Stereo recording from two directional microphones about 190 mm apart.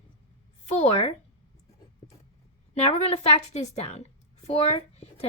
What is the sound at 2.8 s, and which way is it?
A woman's voice, 35° left (ahead or behind).